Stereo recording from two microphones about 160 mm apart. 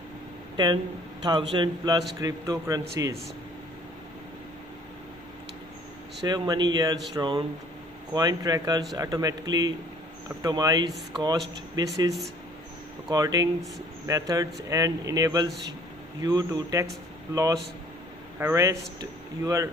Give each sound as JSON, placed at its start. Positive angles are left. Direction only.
{"t": 1.2, "sound": "a man's voice", "side_deg": -25}
{"t": 6.2, "sound": "a man's voice", "side_deg": -25}
{"t": 13.1, "sound": "a man's voice", "side_deg": -25}